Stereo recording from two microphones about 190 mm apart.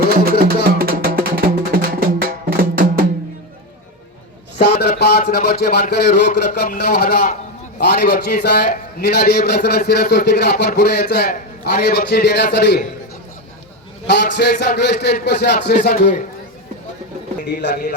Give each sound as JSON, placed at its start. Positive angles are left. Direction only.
{"t": 0.4, "sound": "music", "side_deg": -50}
{"t": 4.8, "sound": "a sound", "side_deg": 60}
{"t": 5.3, "sound": "a man's voice", "side_deg": 55}
{"t": 14.1, "sound": "a man's voice", "side_deg": 60}